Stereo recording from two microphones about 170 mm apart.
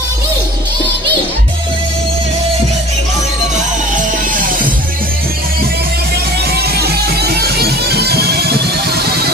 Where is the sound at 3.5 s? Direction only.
50° right (ahead or behind).